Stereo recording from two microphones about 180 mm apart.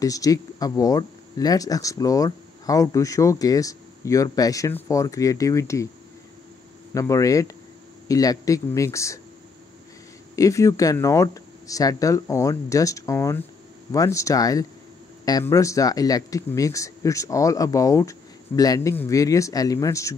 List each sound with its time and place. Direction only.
0.0 s speech: 20° left (ahead or behind)
6.9 s speech: 15° left (ahead or behind)
10.3 s speech: 20° left (ahead or behind)